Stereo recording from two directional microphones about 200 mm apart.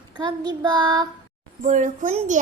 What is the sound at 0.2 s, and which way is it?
Speech, 20° right (ahead or behind).